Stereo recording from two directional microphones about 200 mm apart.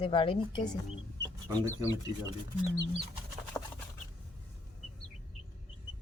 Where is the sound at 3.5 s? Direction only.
10° left (ahead or behind).